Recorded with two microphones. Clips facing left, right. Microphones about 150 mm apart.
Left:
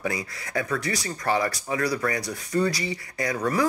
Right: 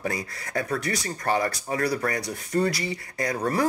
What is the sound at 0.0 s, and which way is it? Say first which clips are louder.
Speech: even; 40° right (ahead or behind).